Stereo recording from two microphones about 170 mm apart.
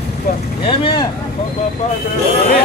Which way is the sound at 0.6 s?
30° left (ahead or behind).